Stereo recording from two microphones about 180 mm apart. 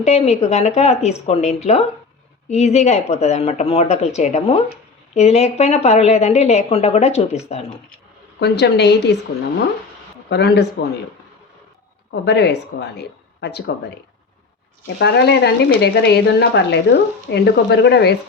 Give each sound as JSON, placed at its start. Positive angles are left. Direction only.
{"t": 0.0, "sound": "a woman's voice", "side_deg": 35}
{"t": 8.4, "sound": "speech", "side_deg": 70}
{"t": 10.2, "sound": "speech", "side_deg": 70}
{"t": 12.2, "sound": "speech", "side_deg": 70}
{"t": 14.9, "sound": "speech", "side_deg": 70}